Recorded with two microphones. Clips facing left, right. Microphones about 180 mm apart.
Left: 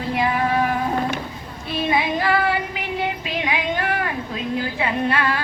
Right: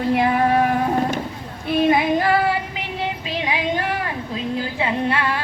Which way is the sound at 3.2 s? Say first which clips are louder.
Even; 30° right (ahead or behind).